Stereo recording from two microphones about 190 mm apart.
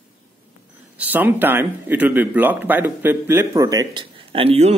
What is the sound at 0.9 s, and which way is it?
Speech, 10° right (ahead or behind).